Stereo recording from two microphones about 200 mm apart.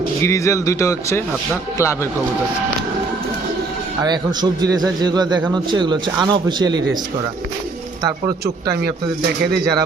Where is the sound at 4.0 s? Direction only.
20° right (ahead or behind).